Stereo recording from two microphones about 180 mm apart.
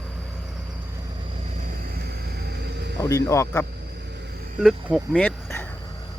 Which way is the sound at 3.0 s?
15° left (ahead or behind).